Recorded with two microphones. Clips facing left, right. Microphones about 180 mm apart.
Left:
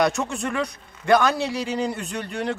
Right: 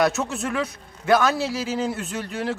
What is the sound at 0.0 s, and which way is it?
A man's voice, 5° right (ahead or behind).